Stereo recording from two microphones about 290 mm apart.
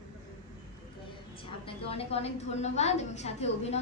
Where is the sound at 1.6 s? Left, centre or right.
Centre.